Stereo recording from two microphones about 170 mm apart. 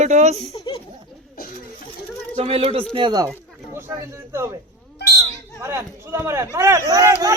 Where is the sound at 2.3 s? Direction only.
35° right (ahead or behind).